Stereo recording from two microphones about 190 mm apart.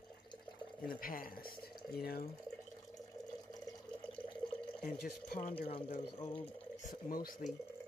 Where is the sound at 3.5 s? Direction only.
20° left (ahead or behind).